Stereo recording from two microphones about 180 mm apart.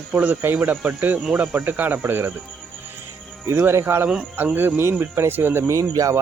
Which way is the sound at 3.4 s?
15° right (ahead or behind).